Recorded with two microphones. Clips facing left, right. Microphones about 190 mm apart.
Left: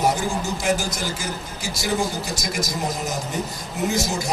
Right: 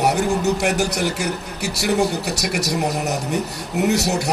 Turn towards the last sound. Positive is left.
turn(degrees=-65)  # may be behind; listen again after turning